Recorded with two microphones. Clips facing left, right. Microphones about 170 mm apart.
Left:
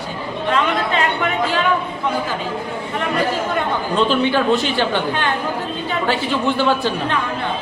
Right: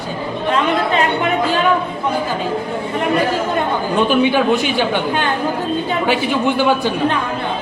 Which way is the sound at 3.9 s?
15° right (ahead or behind).